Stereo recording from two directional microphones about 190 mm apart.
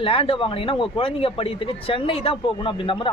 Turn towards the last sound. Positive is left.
turn(degrees=25)  # may be behind; listen again after turning